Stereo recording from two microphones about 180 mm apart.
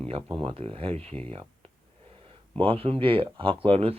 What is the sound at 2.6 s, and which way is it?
Speech, 30° right (ahead or behind).